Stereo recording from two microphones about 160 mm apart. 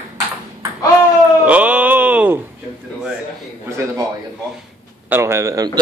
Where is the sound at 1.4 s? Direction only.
10° right (ahead or behind).